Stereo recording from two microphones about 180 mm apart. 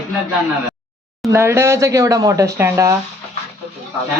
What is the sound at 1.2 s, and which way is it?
Speech, 15° right (ahead or behind).